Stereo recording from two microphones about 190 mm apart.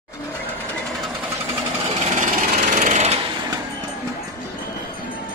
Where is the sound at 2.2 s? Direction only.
45° right (ahead or behind).